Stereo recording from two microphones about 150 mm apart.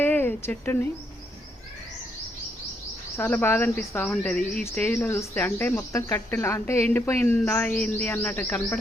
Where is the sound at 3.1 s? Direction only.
15° left (ahead or behind).